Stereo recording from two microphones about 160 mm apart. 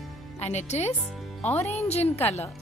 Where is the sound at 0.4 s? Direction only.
45° left (ahead or behind).